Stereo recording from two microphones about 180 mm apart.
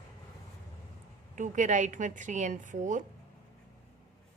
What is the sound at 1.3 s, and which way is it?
A woman's voice, 45° right (ahead or behind).